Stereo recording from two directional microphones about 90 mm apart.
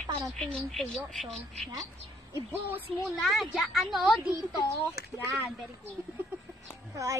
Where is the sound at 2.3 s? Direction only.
25° right (ahead or behind).